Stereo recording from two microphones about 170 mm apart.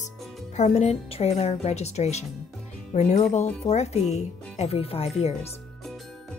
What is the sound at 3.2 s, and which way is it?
Speech, 40° left (ahead or behind).